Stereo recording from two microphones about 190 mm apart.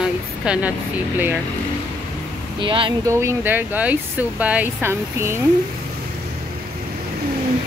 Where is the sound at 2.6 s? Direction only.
25° right (ahead or behind).